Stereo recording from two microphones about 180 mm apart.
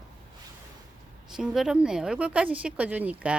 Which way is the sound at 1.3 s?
5° right (ahead or behind).